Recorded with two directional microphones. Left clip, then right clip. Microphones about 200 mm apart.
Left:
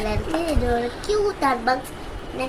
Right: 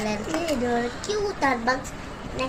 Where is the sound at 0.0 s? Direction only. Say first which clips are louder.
Left 2 dB; 20° left (ahead or behind).